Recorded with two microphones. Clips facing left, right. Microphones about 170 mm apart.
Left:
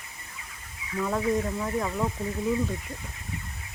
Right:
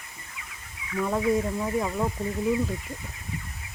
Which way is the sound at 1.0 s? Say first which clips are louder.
Right 2 dB; 10° right (ahead or behind).